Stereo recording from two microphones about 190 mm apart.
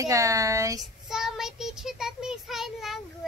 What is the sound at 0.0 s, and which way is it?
Speech, 15° right (ahead or behind).